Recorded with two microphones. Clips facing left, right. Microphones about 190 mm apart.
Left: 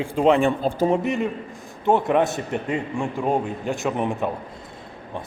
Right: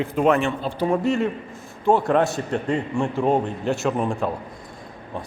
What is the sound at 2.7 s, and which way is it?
A man's voice, centre (ahead or behind).